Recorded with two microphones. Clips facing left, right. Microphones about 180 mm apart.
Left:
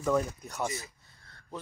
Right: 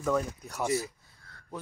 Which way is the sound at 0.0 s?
5° left (ahead or behind).